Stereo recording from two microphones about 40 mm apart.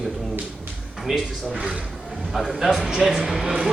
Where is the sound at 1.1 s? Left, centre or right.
Centre.